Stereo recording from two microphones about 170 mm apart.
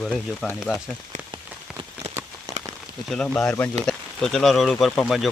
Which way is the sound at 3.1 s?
5° left (ahead or behind).